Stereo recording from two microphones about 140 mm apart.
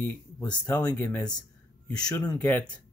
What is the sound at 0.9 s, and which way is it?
Speech, 25° left (ahead or behind).